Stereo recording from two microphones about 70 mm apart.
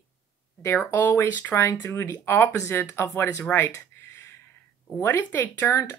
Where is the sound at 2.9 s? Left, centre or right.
Left.